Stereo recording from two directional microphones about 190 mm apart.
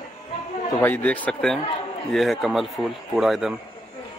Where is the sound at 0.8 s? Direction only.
10° left (ahead or behind).